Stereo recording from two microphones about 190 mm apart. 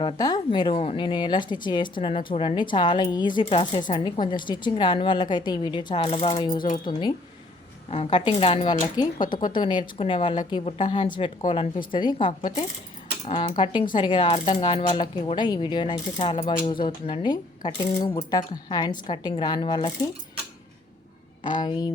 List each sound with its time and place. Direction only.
0.0 s a woman's voice: 20° left (ahead or behind)
13.2 s a woman's voice: 40° left (ahead or behind)
13.9 s a woman's voice: 25° left (ahead or behind)
21.4 s a woman's voice: 25° left (ahead or behind)